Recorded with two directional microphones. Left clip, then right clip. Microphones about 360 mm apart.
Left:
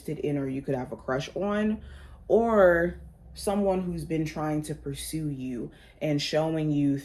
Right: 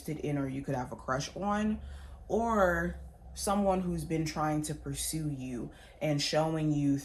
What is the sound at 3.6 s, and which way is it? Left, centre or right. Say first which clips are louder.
Speech: left 3 dB; right.